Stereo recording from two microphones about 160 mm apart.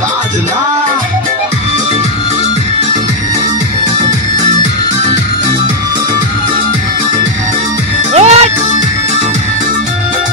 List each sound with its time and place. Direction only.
8.1 s music: 45° right (ahead or behind)